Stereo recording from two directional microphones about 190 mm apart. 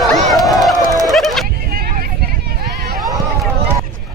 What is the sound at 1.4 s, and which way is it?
Vehicle, 50° right (ahead or behind).